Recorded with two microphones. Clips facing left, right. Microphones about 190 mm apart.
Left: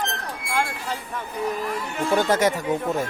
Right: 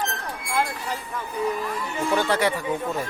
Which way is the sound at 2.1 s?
45° left (ahead or behind).